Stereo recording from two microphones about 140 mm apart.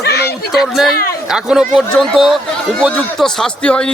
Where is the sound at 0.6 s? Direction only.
Centre (ahead or behind).